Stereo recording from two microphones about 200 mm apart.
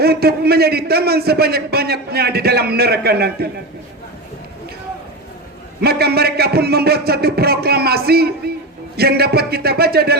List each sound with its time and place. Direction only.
0.0 s a man's voice: 50° right (ahead or behind)
5.8 s a man's voice: 50° right (ahead or behind)